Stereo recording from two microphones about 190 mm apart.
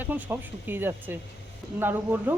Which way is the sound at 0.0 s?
10° right (ahead or behind).